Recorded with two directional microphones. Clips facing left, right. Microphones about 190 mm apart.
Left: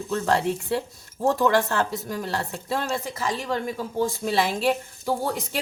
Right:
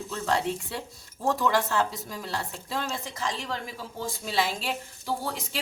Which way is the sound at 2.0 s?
55° left (ahead or behind).